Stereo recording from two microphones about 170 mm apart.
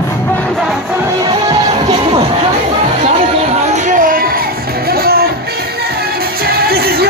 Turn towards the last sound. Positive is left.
turn(degrees=-65)  # may be behind; listen again after turning